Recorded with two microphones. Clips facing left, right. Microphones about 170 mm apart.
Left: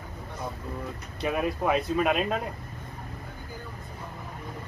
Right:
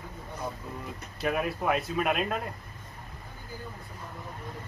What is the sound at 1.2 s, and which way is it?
Speech, centre (ahead or behind).